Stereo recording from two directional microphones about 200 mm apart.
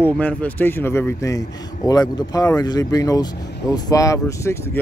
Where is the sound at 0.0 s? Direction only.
10° left (ahead or behind).